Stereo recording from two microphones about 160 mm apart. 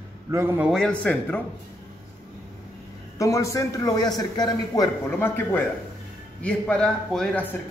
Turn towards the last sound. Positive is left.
turn(degrees=10)  # may be behind; listen again after turning